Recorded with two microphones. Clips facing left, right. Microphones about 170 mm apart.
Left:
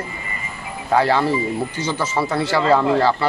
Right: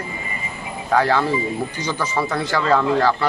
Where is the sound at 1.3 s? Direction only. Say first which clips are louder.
Left 1 dB; 15° right (ahead or behind).